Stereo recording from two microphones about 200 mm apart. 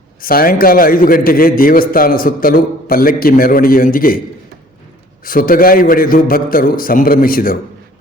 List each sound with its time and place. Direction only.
0.2 s a man's voice: 45° left (ahead or behind)
5.2 s a man's voice: 45° left (ahead or behind)